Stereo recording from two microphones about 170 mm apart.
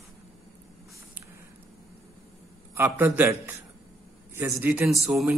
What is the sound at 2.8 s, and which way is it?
Speech, 15° right (ahead or behind).